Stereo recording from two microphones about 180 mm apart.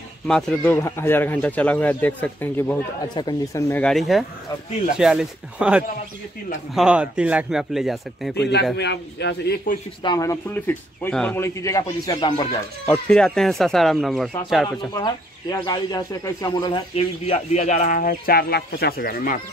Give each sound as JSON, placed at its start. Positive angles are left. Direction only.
{"t": 0.3, "sound": "speech", "side_deg": 5}
{"t": 3.2, "sound": "speech", "side_deg": 20}
{"t": 8.7, "sound": "a man's voice", "side_deg": 70}
{"t": 10.0, "sound": "speech", "side_deg": 20}
{"t": 12.8, "sound": "speech", "side_deg": 5}
{"t": 15.0, "sound": "speech", "side_deg": 20}